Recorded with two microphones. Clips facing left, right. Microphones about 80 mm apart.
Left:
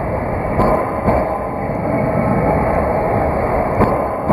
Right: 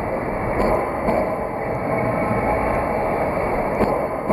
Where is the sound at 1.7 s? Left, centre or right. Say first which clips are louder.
Left 4 dB; centre.